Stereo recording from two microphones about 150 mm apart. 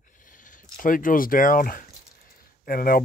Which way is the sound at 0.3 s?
60° left (ahead or behind).